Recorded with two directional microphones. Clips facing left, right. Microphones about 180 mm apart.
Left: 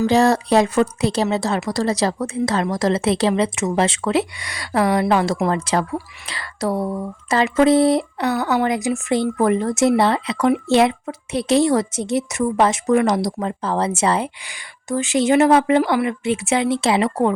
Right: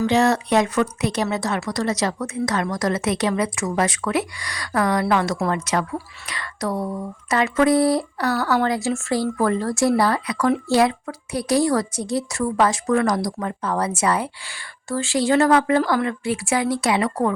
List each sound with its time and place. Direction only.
0.0 s speech: 35° left (ahead or behind)